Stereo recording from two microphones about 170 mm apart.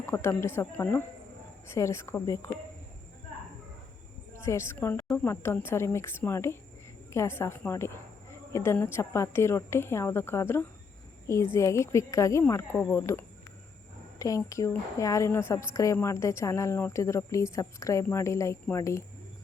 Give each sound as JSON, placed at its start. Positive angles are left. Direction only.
{"t": 0.0, "sound": "a woman's voice", "side_deg": 15}
{"t": 4.4, "sound": "a woman's voice", "side_deg": 15}